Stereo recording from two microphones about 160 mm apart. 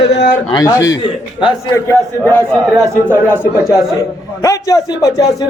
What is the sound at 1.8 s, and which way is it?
Speech, 10° left (ahead or behind).